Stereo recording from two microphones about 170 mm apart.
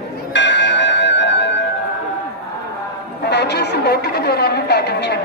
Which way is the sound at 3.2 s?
80° left.